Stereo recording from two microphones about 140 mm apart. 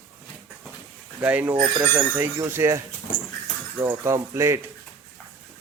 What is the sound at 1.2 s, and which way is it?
Speech, 10° right (ahead or behind).